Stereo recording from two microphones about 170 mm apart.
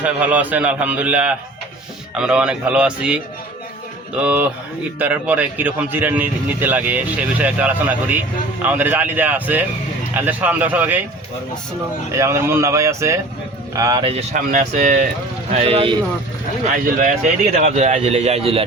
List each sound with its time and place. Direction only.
0.0 s speech: 10° right (ahead or behind)
12.1 s speech: 15° right (ahead or behind)
14.0 s speech: 35° right (ahead or behind)
14.3 s speech: 55° right (ahead or behind)
15.5 s speech: 35° right (ahead or behind)
16.6 s speech: 50° right (ahead or behind)